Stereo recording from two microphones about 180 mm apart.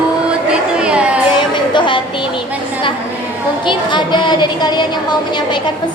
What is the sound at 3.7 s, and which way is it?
A woman's voice, 25° left (ahead or behind).